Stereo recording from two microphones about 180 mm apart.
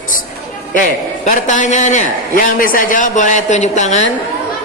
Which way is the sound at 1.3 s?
45° left (ahead or behind).